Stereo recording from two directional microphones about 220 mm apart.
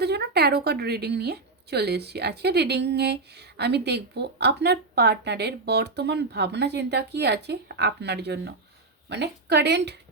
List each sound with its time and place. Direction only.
0.0 s a woman's voice: 50° right (ahead or behind)